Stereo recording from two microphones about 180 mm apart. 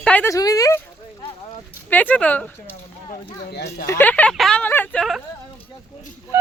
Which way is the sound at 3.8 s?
10° left (ahead or behind).